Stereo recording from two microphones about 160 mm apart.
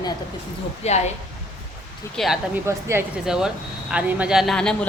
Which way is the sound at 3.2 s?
5° right (ahead or behind).